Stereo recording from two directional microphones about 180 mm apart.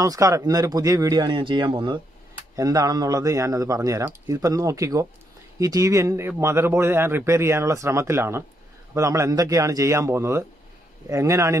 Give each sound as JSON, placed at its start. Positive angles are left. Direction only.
{"t": 0.0, "sound": "speech", "side_deg": -15}